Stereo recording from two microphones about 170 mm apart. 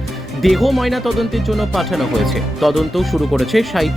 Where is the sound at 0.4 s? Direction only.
Centre (ahead or behind).